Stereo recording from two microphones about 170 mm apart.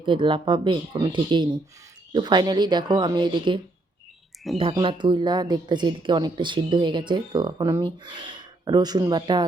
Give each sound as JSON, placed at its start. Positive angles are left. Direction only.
{"t": 0.0, "sound": "a woman's voice", "side_deg": -30}